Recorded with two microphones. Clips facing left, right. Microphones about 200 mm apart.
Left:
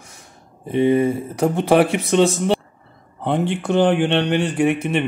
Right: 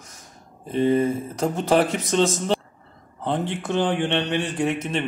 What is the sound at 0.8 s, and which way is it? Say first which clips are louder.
Speech: left 3 dB; 10° left (ahead or behind).